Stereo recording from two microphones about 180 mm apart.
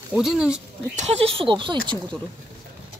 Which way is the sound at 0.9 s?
30° right (ahead or behind).